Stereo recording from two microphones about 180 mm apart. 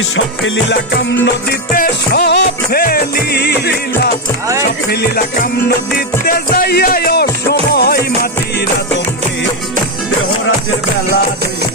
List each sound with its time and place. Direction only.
0.4 s music: 80° left; by 8.6 s 60° left (ahead or behind)